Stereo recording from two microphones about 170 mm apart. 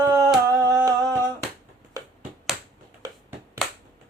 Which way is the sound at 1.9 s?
20° right (ahead or behind).